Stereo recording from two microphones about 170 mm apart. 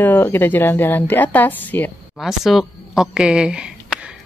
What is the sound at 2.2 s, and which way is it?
Speech, centre (ahead or behind).